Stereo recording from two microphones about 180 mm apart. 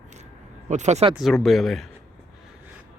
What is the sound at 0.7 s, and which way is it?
Speech, 40° right (ahead or behind).